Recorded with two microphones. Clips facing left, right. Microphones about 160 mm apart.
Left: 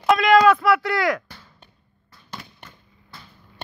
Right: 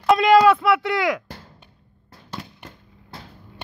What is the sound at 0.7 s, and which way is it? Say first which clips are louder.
Speech: even; 20° right (ahead or behind).